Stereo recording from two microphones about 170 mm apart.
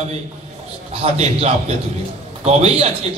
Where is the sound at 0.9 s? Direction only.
40° right (ahead or behind).